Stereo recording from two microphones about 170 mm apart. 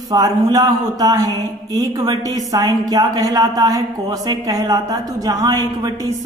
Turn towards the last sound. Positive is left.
turn(degrees=-20)  # may be behind; listen again after turning